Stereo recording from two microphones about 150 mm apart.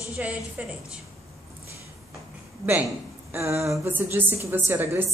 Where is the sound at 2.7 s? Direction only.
15° right (ahead or behind).